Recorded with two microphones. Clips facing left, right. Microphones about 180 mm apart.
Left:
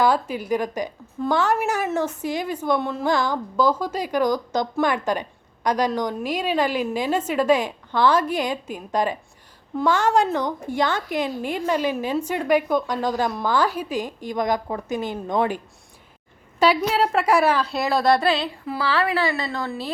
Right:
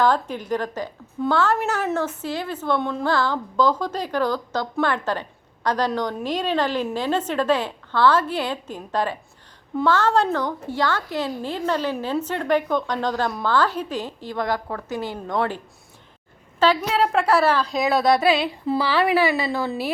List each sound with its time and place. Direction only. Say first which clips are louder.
0.0 s a woman's voice: even; 10° left (ahead or behind); by 18.5 s 5° right (ahead or behind)
18.6 s a woman's voice: right 5 dB; 25° right (ahead or behind)
18.9 s a woman's voice: right 2 dB; 15° right (ahead or behind)